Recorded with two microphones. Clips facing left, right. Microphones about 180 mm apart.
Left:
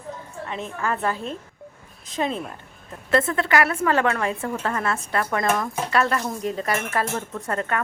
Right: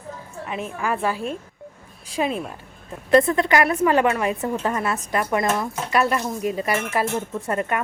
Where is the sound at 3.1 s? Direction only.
20° right (ahead or behind).